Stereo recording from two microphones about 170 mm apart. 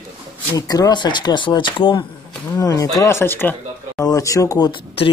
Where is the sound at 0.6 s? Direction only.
20° left (ahead or behind).